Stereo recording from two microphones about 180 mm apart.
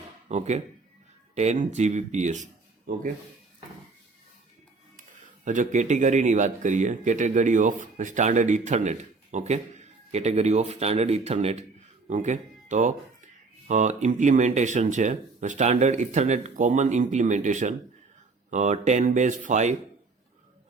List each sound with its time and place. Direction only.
0.3 s speech: 40° right (ahead or behind)
5.5 s speech: 45° right (ahead or behind)